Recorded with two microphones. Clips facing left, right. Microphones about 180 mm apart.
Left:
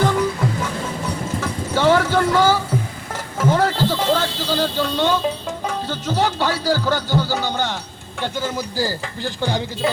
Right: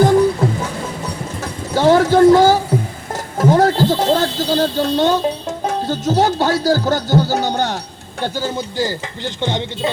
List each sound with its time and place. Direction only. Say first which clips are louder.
0.0 s music: right 7 dB; 35° right (ahead or behind)
1.4 s clip-clop: right 4 dB; 40° right (ahead or behind)
3.3 s music: right 5 dB; 40° right (ahead or behind)
3.9 s speech: right 4 dB; 40° right (ahead or behind); by 9.9 s 20° right (ahead or behind)